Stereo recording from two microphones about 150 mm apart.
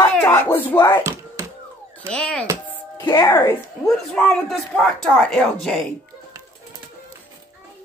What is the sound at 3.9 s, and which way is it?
Speech, 5° left (ahead or behind).